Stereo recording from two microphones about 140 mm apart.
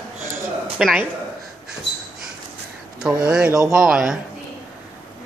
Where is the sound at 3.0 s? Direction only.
Centre (ahead or behind).